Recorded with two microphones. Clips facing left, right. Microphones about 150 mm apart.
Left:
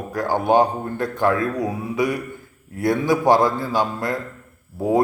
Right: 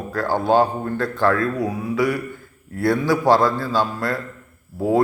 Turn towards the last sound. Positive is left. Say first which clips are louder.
# even
turn(degrees=15)  # may be behind; listen again after turning